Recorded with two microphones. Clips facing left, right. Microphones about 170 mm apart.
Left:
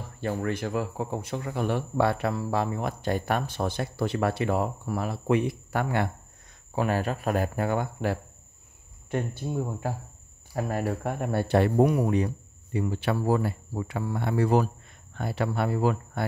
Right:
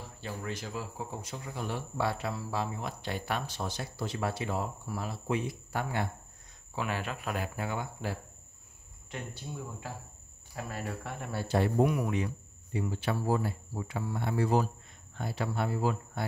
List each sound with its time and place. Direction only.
0.2 s speech: 55° left (ahead or behind)
6.7 s speech: 45° left (ahead or behind); by 11.8 s 65° left (ahead or behind)
11.8 s speech: 35° left (ahead or behind)
12.7 s speech: 65° left (ahead or behind)